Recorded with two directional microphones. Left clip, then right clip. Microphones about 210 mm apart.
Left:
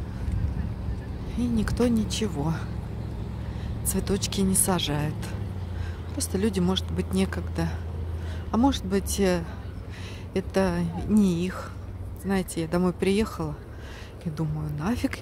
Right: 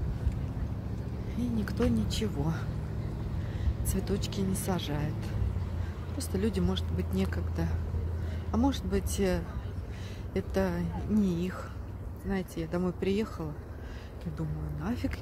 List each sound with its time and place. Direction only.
1.3 s speech: 15° left (ahead or behind)
3.9 s a woman's voice: 20° left (ahead or behind)